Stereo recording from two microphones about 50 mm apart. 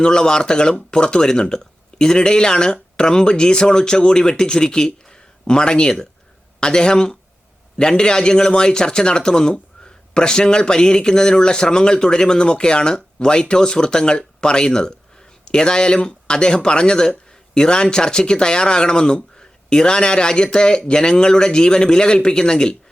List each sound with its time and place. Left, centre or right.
0.0 s speech: centre